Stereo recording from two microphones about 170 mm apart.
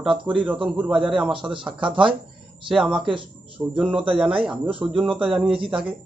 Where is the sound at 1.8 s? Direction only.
30° right (ahead or behind).